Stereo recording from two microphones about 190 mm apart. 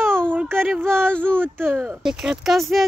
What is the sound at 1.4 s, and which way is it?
A child's voice, 10° right (ahead or behind).